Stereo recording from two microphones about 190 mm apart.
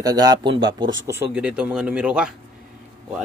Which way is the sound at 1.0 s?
10° right (ahead or behind).